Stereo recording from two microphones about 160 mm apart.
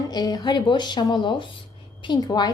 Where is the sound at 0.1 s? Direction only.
25° left (ahead or behind).